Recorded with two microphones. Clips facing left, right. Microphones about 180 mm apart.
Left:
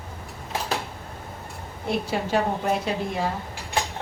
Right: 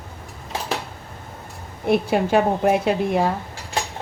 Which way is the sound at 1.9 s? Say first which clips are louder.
Right 7 dB; 60° right (ahead or behind).